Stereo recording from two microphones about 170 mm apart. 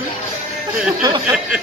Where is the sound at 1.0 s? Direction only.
25° right (ahead or behind).